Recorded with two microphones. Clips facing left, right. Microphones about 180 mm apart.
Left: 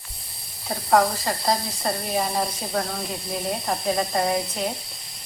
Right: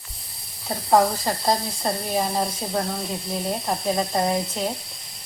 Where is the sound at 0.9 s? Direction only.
20° right (ahead or behind).